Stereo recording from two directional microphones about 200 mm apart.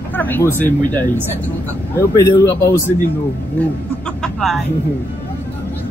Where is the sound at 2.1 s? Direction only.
15° left (ahead or behind).